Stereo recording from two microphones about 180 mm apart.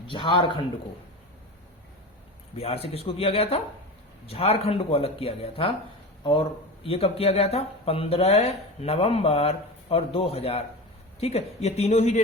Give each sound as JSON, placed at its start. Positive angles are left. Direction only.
{"t": 0.1, "sound": "a man's voice", "side_deg": 30}
{"t": 2.6, "sound": "speech", "side_deg": 35}
{"t": 6.8, "sound": "speech", "side_deg": 35}